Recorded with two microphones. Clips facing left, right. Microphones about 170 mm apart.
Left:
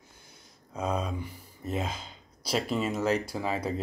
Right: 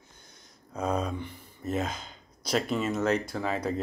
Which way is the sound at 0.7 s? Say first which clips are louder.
Right 2 dB; centre (ahead or behind).